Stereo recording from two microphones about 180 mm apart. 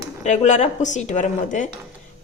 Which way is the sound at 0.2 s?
40° left (ahead or behind).